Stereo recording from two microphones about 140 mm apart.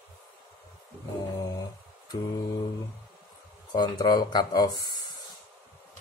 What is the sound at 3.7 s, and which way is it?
Speech, 30° left (ahead or behind).